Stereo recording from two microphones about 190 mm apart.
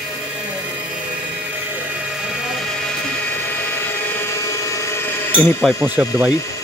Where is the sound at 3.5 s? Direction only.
10° left (ahead or behind).